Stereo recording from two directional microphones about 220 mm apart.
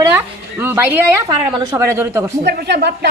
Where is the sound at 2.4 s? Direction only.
50° right (ahead or behind).